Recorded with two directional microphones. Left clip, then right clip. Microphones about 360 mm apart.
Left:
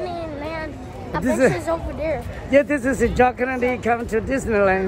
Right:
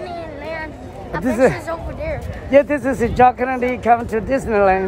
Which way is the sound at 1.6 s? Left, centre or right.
Centre.